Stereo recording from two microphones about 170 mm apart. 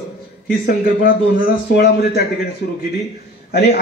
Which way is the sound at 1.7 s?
70° left (ahead or behind).